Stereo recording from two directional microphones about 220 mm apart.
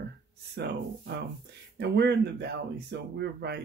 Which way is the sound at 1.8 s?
50° right (ahead or behind).